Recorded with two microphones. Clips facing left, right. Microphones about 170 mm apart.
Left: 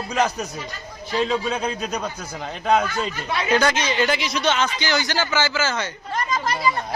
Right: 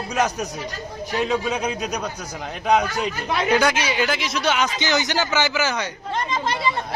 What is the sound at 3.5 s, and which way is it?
Speech, 10° right (ahead or behind).